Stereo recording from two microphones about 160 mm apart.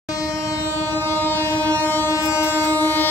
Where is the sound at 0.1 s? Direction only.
20° left (ahead or behind).